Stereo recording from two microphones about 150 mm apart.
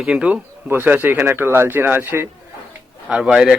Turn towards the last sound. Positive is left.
turn(degrees=-5)  # may be behind; listen again after turning